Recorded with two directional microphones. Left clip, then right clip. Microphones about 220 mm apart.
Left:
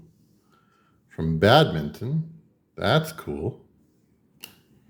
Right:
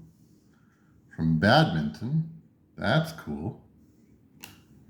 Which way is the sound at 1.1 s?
40° left (ahead or behind).